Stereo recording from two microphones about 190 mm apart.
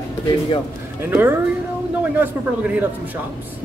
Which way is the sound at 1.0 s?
10° right (ahead or behind).